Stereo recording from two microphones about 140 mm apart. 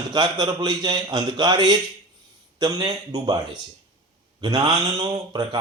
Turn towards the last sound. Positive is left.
turn(degrees=-30)  # may be behind; listen again after turning